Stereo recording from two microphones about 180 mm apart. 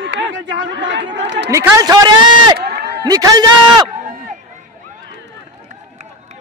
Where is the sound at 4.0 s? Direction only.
45° right (ahead or behind).